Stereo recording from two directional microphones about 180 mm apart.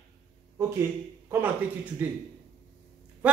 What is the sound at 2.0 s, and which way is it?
Speech, 10° right (ahead or behind).